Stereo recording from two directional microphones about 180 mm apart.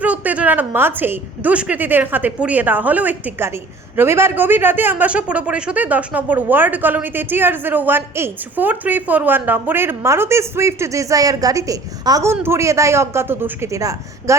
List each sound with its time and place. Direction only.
0.0 s a man's voice: 10° right (ahead or behind)